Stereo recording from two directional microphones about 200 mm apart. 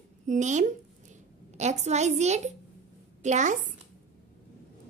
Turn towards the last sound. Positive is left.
turn(degrees=-40)  # may be behind; listen again after turning